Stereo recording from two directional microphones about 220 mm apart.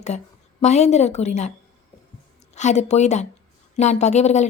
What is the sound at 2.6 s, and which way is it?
Speech, 30° left (ahead or behind).